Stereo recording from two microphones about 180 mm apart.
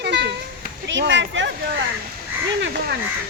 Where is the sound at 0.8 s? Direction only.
85° right.